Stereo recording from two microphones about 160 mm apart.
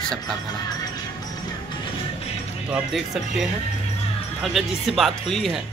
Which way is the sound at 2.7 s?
5° right (ahead or behind).